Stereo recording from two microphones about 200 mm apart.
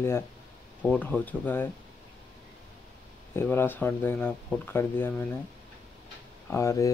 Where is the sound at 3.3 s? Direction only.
10° left (ahead or behind).